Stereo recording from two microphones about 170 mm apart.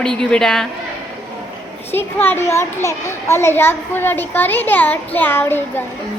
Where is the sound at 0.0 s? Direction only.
5° left (ahead or behind).